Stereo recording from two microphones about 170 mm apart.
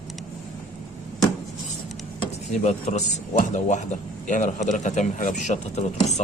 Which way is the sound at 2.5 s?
40° left (ahead or behind).